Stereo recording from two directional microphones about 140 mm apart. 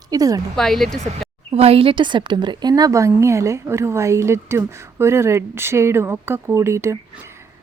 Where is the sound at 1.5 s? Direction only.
45° right (ahead or behind).